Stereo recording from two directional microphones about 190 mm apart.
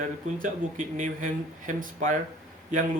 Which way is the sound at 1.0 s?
40° right (ahead or behind).